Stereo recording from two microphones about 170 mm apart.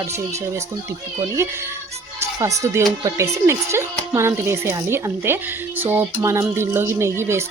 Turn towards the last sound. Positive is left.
turn(degrees=-15)  # may be behind; listen again after turning